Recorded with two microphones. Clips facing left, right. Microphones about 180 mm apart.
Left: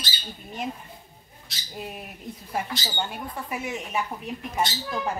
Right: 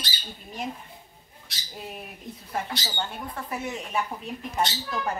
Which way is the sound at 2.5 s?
5° left (ahead or behind).